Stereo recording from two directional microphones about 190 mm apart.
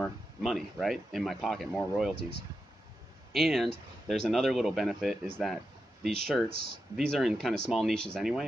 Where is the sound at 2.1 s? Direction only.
50° right (ahead or behind).